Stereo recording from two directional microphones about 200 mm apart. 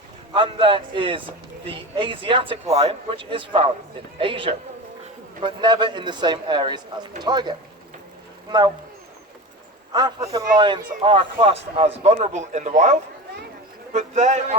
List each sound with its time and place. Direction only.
0.3 s speech: 25° right (ahead or behind)
9.9 s a man's voice: 20° right (ahead or behind); by 14.4 s 35° right (ahead or behind)